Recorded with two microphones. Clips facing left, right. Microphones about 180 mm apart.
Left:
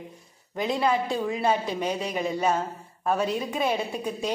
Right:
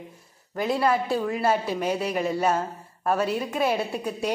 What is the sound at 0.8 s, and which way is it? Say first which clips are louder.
A woman's voice: right 1 dB; 5° right (ahead or behind).